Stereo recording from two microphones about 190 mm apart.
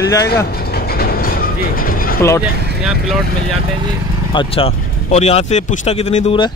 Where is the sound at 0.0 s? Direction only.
20° left (ahead or behind).